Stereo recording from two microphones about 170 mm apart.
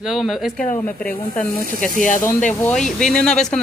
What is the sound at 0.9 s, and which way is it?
Speech, 60° left (ahead or behind).